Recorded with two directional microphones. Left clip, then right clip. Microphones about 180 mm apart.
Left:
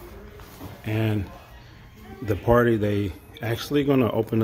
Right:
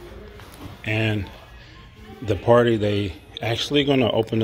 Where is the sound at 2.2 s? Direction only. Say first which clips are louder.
Right 3 dB; 15° left (ahead or behind).